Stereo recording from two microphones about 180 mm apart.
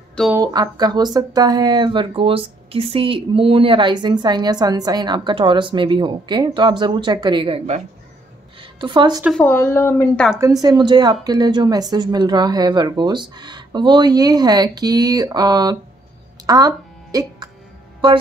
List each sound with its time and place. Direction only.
0.4 s speech: 20° right (ahead or behind)
9.4 s speech: 10° left (ahead or behind)
10.6 s speech: 25° right (ahead or behind)